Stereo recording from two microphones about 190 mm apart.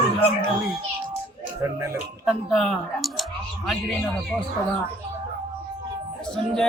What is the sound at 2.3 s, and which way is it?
Speech, centre (ahead or behind).